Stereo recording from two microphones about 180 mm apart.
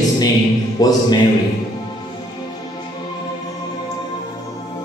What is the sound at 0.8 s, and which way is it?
Mantra, 20° left (ahead or behind).